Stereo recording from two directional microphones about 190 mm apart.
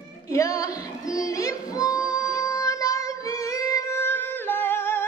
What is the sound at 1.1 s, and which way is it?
Child singing, 20° left (ahead or behind).